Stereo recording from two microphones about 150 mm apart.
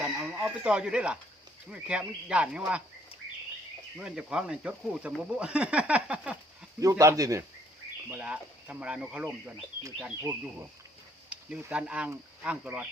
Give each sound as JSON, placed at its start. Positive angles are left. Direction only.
{"t": 0.0, "sound": "speech", "side_deg": -10}
{"t": 3.9, "sound": "speech", "side_deg": -5}
{"t": 7.0, "sound": "speech", "side_deg": -20}
{"t": 8.1, "sound": "speech", "side_deg": -10}